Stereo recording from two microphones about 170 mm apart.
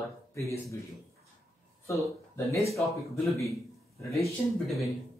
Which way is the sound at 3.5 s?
20° left (ahead or behind).